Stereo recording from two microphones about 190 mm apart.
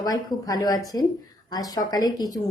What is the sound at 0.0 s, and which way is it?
A woman's voice, 20° left (ahead or behind).